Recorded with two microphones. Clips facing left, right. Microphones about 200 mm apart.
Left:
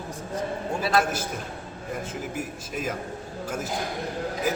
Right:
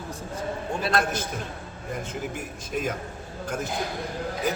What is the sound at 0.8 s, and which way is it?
Speech, 5° left (ahead or behind).